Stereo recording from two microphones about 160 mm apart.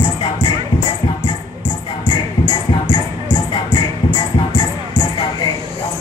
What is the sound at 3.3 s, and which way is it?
Music, 30° left (ahead or behind).